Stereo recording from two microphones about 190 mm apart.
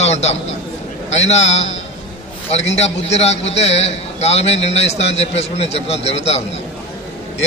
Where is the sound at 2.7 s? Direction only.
35° left (ahead or behind).